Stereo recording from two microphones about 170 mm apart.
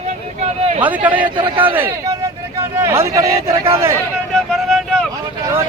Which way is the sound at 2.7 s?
15° right (ahead or behind).